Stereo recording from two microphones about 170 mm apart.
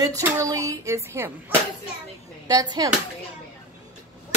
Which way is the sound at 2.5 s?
20° right (ahead or behind).